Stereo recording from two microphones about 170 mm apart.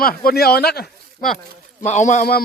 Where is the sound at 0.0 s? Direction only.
60° left (ahead or behind).